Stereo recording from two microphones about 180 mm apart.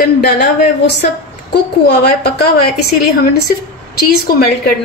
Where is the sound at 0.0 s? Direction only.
60° left (ahead or behind).